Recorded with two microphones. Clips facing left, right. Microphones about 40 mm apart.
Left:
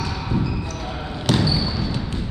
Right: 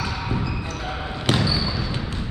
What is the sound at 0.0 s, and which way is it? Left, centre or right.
Music, centre.